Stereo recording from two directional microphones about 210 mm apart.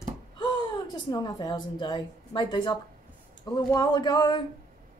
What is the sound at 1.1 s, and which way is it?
A woman's voice, 20° left (ahead or behind).